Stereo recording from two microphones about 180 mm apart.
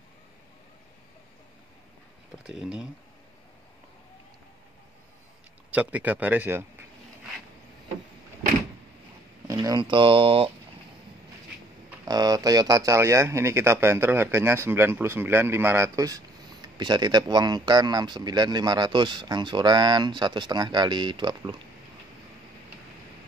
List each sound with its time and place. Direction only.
2.4 s speech: 5° right (ahead or behind)
5.7 s speech: 10° right (ahead or behind)
9.5 s speech: 20° right (ahead or behind)
12.0 s speech: 20° right (ahead or behind)